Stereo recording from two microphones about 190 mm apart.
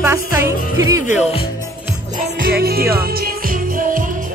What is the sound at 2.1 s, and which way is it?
Music, 50° right (ahead or behind).